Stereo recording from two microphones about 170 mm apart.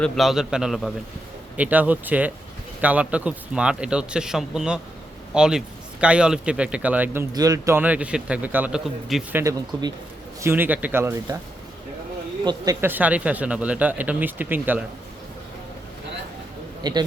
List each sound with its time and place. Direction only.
0.0 s a man's voice: centre (ahead or behind)
9.3 s speech: 20° right (ahead or behind)
12.5 s speech: 15° right (ahead or behind)
16.8 s a man's voice: 25° right (ahead or behind)